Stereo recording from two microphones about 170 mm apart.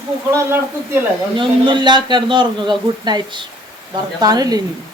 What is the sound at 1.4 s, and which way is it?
Speech, 25° right (ahead or behind).